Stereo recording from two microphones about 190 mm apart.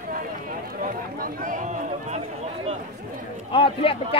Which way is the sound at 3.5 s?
25° left (ahead or behind).